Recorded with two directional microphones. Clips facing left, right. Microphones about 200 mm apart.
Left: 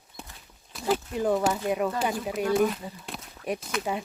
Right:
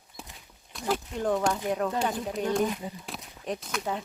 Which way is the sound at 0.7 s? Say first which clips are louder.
Left 3 dB; centre (ahead or behind).